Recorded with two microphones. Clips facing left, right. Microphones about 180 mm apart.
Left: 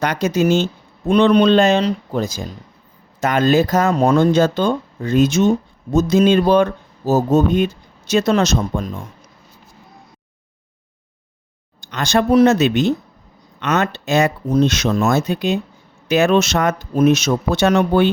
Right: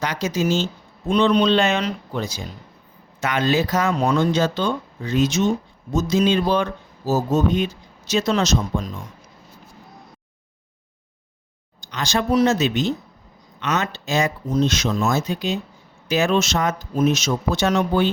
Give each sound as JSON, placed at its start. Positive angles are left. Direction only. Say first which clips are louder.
{"t": 0.0, "sound": "speech", "louder": "left 5 dB", "side_deg": 60}
{"t": 1.6, "sound": "speech", "louder": "left 6 dB", "side_deg": 35}
{"t": 2.2, "sound": "speech", "louder": "left 5 dB", "side_deg": 45}
{"t": 11.8, "sound": "speech", "louder": "left 6 dB", "side_deg": 60}